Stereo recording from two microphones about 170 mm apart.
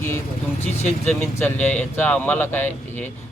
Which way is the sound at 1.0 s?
15° left (ahead or behind).